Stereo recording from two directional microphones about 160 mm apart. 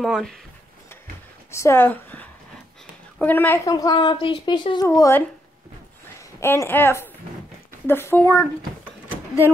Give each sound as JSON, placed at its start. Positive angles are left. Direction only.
{"t": 0.0, "sound": "speech", "side_deg": 0}
{"t": 1.5, "sound": "a woman's voice", "side_deg": 15}
{"t": 3.6, "sound": "speech", "side_deg": 25}
{"t": 4.8, "sound": "speech", "side_deg": 20}
{"t": 6.4, "sound": "speech", "side_deg": 15}